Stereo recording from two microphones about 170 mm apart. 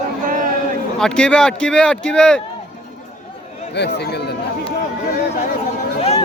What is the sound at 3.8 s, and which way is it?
Speech, 85° left.